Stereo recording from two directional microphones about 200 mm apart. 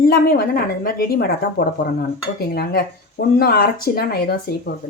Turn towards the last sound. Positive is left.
turn(degrees=50)  # may be behind; listen again after turning